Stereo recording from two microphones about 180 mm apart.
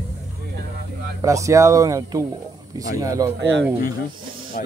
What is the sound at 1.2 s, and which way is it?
Speech, 15° right (ahead or behind).